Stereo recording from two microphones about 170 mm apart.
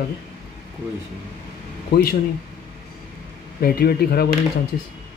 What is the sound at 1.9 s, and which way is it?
Speech, 75° left (ahead or behind).